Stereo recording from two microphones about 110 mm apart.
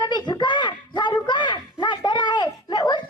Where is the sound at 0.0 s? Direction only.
45° left (ahead or behind).